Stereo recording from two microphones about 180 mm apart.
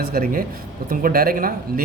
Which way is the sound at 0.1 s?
55° right (ahead or behind).